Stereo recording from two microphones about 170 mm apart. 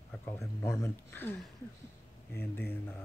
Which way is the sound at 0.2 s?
15° left (ahead or behind).